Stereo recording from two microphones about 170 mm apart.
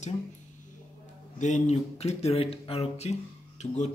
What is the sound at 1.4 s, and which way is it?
Speech, 40° left (ahead or behind).